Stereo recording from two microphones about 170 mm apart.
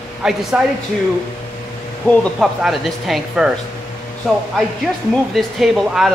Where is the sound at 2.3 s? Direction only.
Centre (ahead or behind).